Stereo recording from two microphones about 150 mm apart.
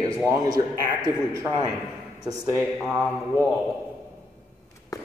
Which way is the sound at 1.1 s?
15° right (ahead or behind).